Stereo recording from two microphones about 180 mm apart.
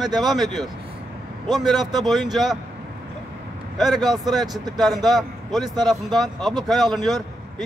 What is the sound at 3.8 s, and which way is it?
Speech, centre (ahead or behind).